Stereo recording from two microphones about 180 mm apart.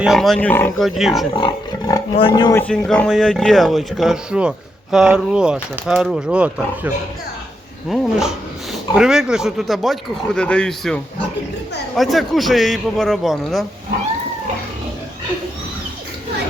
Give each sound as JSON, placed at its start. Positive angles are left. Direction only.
{"t": 0.0, "sound": "speech", "side_deg": 0}
{"t": 0.9, "sound": "speech", "side_deg": 0}
{"t": 1.4, "sound": "speech", "side_deg": 25}
{"t": 2.6, "sound": "speech", "side_deg": 5}